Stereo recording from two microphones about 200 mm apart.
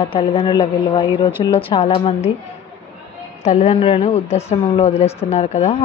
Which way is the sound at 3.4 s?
30° left (ahead or behind).